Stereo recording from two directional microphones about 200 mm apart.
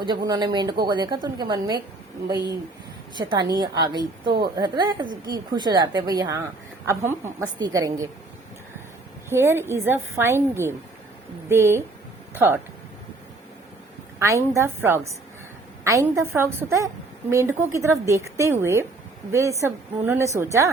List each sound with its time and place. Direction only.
0.3 s a woman's voice: 20° right (ahead or behind)
3.2 s a woman's voice: 20° right (ahead or behind)
9.3 s a woman's voice: 10° right (ahead or behind)
14.2 s a woman's voice: 15° right (ahead or behind)